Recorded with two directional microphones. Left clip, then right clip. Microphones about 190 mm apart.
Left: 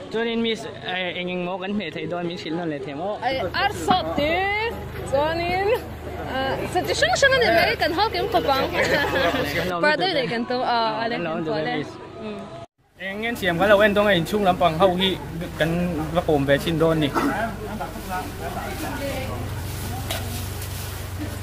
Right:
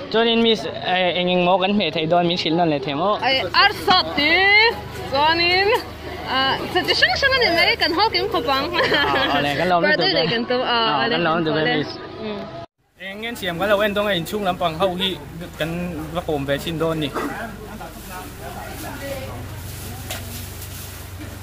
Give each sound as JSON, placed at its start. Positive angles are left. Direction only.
{"t": 0.1, "sound": "speech", "side_deg": -10}
{"t": 3.2, "sound": "a woman's voice", "side_deg": 10}
{"t": 9.6, "sound": "speech", "side_deg": -5}
{"t": 9.8, "sound": "speech", "side_deg": 45}
{"t": 10.3, "sound": "a woman's voice", "side_deg": 25}
{"t": 11.1, "sound": "speech", "side_deg": -20}
{"t": 11.5, "sound": "speech", "side_deg": 15}
{"t": 13.0, "sound": "speech", "side_deg": -5}